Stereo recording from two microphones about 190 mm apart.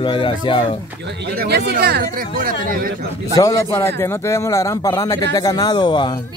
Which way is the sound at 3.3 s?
20° left (ahead or behind).